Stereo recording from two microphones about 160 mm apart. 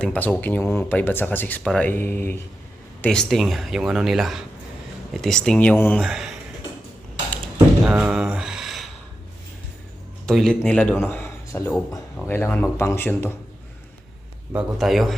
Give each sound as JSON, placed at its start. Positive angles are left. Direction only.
{"t": 0.0, "sound": "speech", "side_deg": 10}
{"t": 6.1, "sound": "speech", "side_deg": 0}
{"t": 7.9, "sound": "a sound", "side_deg": -5}
{"t": 10.2, "sound": "speech", "side_deg": 5}
{"t": 14.5, "sound": "speech", "side_deg": 0}